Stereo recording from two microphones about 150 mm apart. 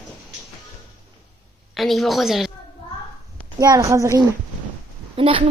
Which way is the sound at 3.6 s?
25° right (ahead or behind).